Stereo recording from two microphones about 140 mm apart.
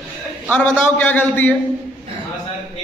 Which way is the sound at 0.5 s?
10° left (ahead or behind).